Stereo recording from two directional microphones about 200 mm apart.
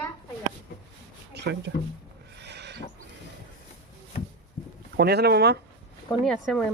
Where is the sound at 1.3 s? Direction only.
55° right (ahead or behind).